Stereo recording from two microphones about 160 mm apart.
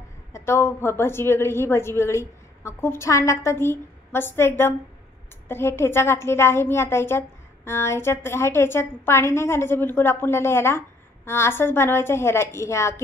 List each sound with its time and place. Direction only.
0.3 s a woman's voice: 15° left (ahead or behind)